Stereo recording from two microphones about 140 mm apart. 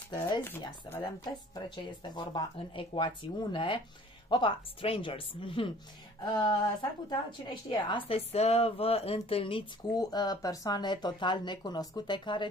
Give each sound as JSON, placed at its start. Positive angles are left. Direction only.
{"t": 1.0, "sound": "a woman's voice", "side_deg": 30}
{"t": 8.3, "sound": "speech", "side_deg": 45}
{"t": 9.9, "sound": "speech", "side_deg": 25}